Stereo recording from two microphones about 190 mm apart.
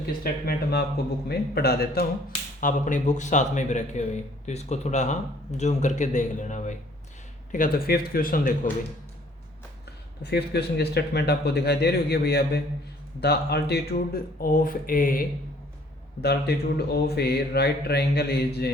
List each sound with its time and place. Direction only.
0.4 s speech: 60° left (ahead or behind)
2.6 s a man's voice: 45° left (ahead or behind)
7.5 s speech: 50° left (ahead or behind)
10.2 s speech: 60° left (ahead or behind)